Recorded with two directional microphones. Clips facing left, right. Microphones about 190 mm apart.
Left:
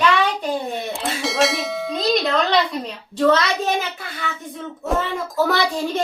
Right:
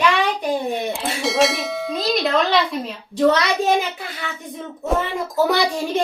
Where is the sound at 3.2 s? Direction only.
15° right (ahead or behind).